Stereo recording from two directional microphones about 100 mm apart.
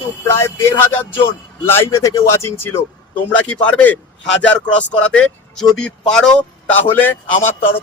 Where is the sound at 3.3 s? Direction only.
15° left (ahead or behind).